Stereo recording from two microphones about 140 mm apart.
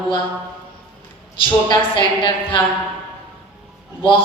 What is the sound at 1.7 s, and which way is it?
Speech, 35° left (ahead or behind).